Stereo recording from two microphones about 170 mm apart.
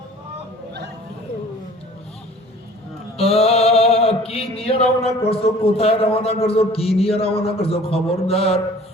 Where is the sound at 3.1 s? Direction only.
35° left (ahead or behind).